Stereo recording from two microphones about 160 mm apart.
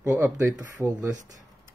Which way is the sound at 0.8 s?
15° right (ahead or behind).